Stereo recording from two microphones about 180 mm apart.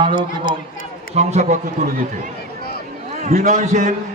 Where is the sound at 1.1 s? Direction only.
40° right (ahead or behind).